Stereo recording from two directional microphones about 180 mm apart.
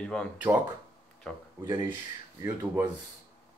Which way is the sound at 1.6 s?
25° right (ahead or behind).